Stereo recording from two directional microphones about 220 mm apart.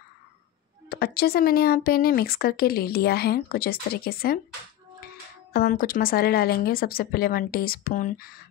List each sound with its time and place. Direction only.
0.8 s speech: 45° left (ahead or behind)
5.5 s speech: 40° left (ahead or behind)